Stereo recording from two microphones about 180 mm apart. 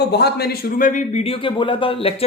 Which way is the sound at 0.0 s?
65° left (ahead or behind).